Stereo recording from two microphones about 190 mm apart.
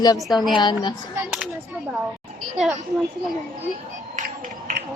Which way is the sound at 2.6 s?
Centre (ahead or behind).